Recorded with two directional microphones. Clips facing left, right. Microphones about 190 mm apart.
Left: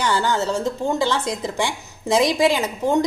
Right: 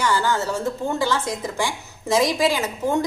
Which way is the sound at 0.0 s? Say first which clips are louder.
Left 1 dB; 25° left (ahead or behind).